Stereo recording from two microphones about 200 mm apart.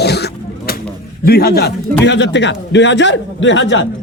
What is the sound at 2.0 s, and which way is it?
A man's voice, 60° left (ahead or behind).